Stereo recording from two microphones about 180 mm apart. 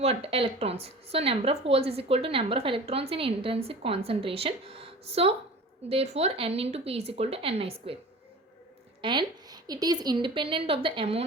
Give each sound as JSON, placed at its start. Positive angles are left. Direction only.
{"t": 0.0, "sound": "a woman's voice", "side_deg": -35}
{"t": 9.0, "sound": "a woman's voice", "side_deg": -25}